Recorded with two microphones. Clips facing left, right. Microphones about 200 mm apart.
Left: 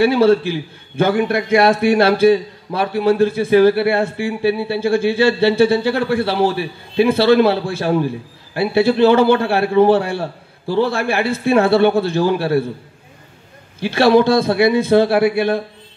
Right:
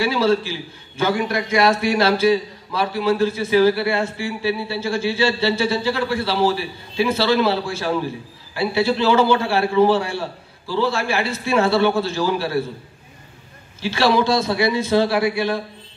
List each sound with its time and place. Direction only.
0.0 s a man's voice: 55° left (ahead or behind)
13.7 s a man's voice: 55° left (ahead or behind)